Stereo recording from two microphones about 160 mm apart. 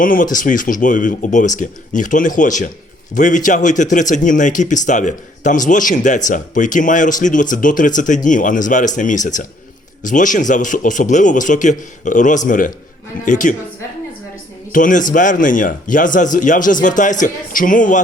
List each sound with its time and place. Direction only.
0.0 s a man's voice: 55° left (ahead or behind)
14.7 s speech: 55° left (ahead or behind)